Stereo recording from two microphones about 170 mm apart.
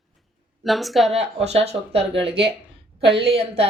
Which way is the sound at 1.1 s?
40° right (ahead or behind).